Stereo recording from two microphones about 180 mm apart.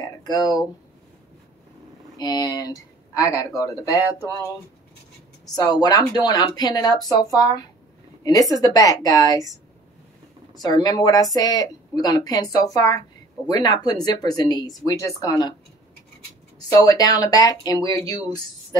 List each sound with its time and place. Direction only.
0.2 s a woman's voice: 20° left (ahead or behind)
2.1 s a woman's voice: 20° left (ahead or behind)
5.6 s a woman's voice: 20° left (ahead or behind)
8.2 s a woman's voice: 20° left (ahead or behind)
10.5 s a woman's voice: 20° left (ahead or behind)
16.5 s a woman's voice: 20° left (ahead or behind)